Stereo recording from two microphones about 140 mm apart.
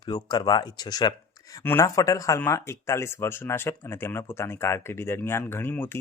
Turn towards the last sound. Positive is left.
turn(degrees=15)  # may be behind; listen again after turning